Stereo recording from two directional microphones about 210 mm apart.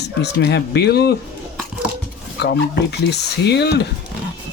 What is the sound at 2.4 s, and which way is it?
Speech, 50° left (ahead or behind).